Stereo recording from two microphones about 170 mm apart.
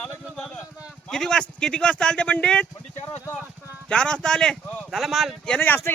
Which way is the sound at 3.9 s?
5° left (ahead or behind).